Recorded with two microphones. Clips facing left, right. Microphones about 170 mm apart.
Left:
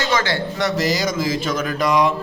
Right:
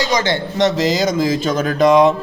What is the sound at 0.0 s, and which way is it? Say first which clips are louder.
Speech: right 3 dB; 15° right (ahead or behind).